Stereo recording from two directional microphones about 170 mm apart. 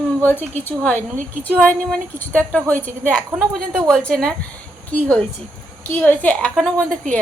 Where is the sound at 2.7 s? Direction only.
50° right (ahead or behind).